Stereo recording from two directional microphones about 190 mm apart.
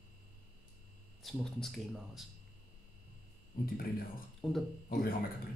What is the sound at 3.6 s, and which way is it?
Speech, 50° left (ahead or behind).